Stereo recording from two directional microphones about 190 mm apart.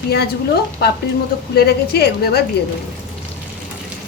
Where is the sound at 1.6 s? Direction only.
55° left (ahead or behind).